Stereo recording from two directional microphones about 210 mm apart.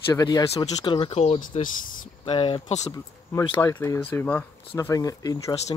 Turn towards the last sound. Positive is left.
turn(degrees=15)  # may be behind; listen again after turning